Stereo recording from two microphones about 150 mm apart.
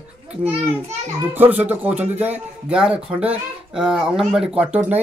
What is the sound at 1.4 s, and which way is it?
Speech, 10° right (ahead or behind).